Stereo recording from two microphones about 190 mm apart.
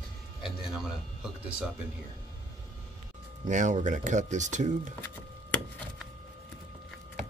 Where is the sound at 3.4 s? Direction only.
40° right (ahead or behind).